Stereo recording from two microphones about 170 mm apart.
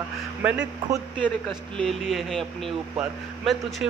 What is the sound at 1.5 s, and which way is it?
A woman's voice, centre (ahead or behind).